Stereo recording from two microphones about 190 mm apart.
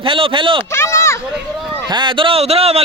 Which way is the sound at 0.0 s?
25° right (ahead or behind).